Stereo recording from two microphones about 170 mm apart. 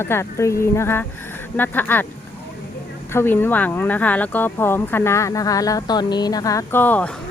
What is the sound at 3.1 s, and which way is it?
Speech, 15° left (ahead or behind).